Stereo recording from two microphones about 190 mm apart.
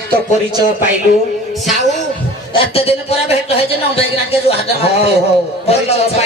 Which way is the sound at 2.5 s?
30° left (ahead or behind).